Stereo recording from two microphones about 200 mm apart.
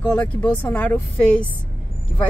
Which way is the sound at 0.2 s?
5° left (ahead or behind).